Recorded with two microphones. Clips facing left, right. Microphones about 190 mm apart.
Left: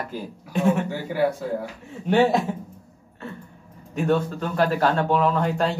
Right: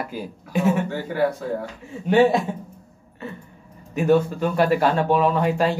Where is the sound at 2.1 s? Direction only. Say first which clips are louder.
Right 2 dB; centre (ahead or behind).